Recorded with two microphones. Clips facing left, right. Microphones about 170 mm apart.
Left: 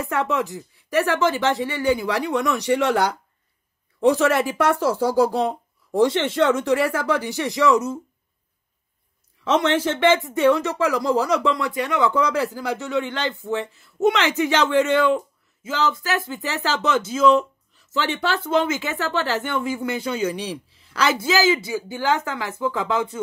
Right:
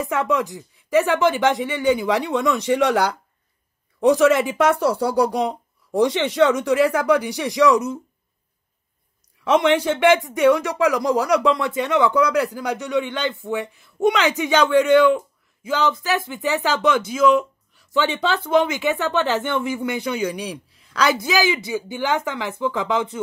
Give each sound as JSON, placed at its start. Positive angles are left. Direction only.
{"t": 0.0, "sound": "speech", "side_deg": -20}
{"t": 9.4, "sound": "speech", "side_deg": -10}